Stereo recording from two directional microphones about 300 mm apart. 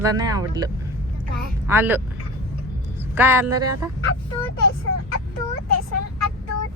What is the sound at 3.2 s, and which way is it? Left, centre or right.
Speech, centre.